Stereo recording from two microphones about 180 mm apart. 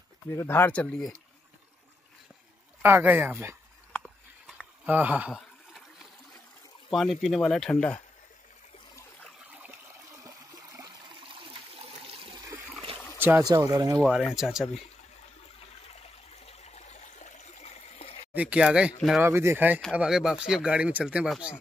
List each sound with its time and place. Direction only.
0.3 s speech: 15° left (ahead or behind)
2.8 s speech: 10° right (ahead or behind)
3.9 s a sound: 5° left (ahead or behind)
4.8 s a sound: 10° right (ahead or behind)
6.9 s speech: centre (ahead or behind)
9.5 s toilet flush: 10° right (ahead or behind)
10.8 s toilet flush: 25° right (ahead or behind)
13.2 s speech: 15° right (ahead or behind)
14.0 s speech: 5° right (ahead or behind)
16.4 s a sound: 35° left (ahead or behind)
18.3 s speech: 5° right (ahead or behind)
19.2 s speech: 15° right (ahead or behind)
19.8 s speech: centre (ahead or behind)